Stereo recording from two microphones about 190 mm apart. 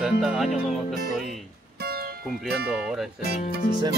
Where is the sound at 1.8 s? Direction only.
55° right (ahead or behind).